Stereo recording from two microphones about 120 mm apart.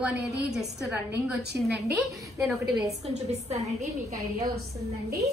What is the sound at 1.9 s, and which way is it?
Speech, 25° right (ahead or behind).